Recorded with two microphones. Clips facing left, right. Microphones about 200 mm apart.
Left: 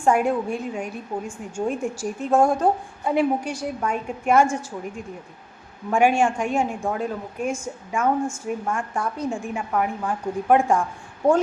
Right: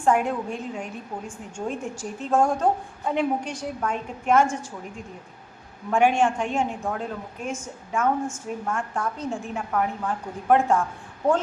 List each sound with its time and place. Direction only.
0.0 s a woman's voice: 10° left (ahead or behind)
5.9 s a woman's voice: 10° left (ahead or behind)